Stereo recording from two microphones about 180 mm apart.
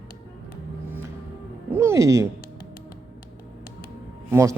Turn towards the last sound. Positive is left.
turn(degrees=-15)  # may be behind; listen again after turning